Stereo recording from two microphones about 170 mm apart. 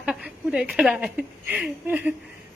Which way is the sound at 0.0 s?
5° right (ahead or behind).